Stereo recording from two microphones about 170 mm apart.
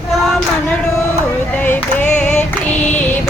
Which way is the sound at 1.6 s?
10° left (ahead or behind).